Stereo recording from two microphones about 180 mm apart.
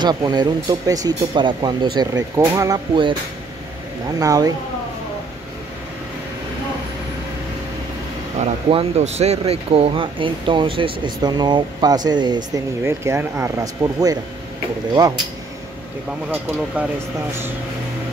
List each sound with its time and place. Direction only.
0.0 s speech: 25° right (ahead or behind)
4.2 s speech: 20° right (ahead or behind)
8.4 s speech: 35° right (ahead or behind); by 14.1 s 20° right (ahead or behind)
16.3 s speech: 5° right (ahead or behind)